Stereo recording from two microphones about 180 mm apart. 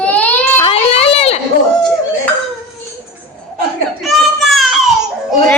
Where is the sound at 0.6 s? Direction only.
30° left (ahead or behind).